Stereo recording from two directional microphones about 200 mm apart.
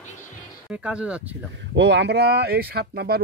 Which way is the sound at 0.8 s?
5° right (ahead or behind).